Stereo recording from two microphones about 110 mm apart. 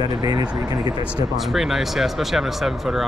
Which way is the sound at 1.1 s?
5° right (ahead or behind).